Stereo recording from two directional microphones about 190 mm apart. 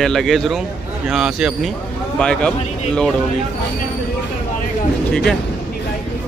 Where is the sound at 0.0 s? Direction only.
Centre (ahead or behind).